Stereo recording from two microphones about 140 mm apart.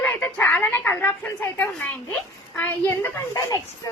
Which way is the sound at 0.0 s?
15° left (ahead or behind).